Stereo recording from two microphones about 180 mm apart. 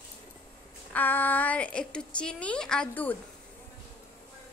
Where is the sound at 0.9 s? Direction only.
10° left (ahead or behind).